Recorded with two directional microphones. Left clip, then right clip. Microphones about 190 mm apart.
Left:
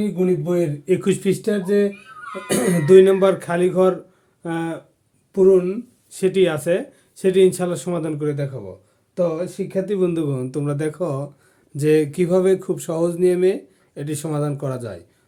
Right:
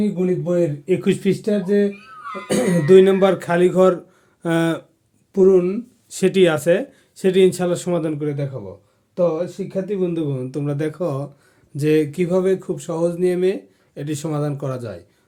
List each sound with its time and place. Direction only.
0.2 s speech: centre (ahead or behind); by 3.9 s 15° right (ahead or behind)
4.4 s speech: 40° right (ahead or behind)
5.3 s speech: 20° right (ahead or behind); by 9.5 s centre (ahead or behind)
9.6 s speech: 25° left (ahead or behind); by 15.0 s 5° left (ahead or behind)